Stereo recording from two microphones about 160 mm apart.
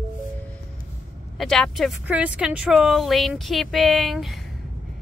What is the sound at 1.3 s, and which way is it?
Speech, 5° left (ahead or behind).